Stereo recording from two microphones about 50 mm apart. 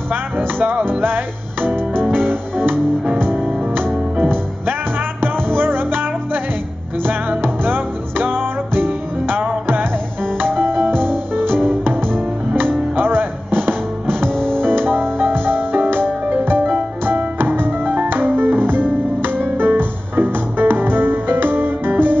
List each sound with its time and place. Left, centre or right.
0.1 s music: right
3.3 s music: centre
5.2 s music: right
10.6 s music: right
14.3 s music: centre
14.6 s music: right
17.6 s music: right